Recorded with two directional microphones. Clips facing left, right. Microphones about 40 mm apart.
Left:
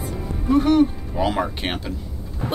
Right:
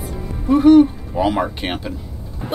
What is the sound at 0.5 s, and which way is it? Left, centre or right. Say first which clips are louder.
Speech: right 6 dB; centre.